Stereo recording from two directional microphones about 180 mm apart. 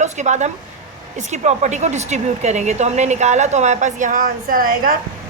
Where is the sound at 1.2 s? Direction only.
40° right (ahead or behind).